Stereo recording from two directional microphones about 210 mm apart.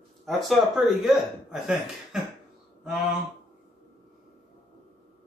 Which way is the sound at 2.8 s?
Centre (ahead or behind).